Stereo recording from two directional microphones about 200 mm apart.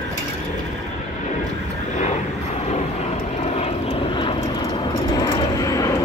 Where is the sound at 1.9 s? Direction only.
35° left (ahead or behind).